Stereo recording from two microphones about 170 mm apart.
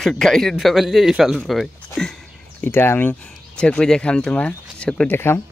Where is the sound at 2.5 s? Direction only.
15° left (ahead or behind).